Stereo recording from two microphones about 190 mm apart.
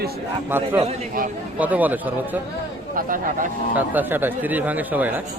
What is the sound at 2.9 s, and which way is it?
Speech, 45° right (ahead or behind).